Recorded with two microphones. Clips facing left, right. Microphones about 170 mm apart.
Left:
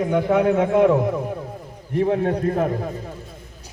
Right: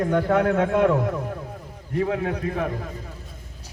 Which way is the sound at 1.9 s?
30° left (ahead or behind).